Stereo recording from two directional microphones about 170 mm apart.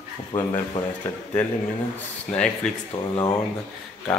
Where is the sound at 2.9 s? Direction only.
25° left (ahead or behind).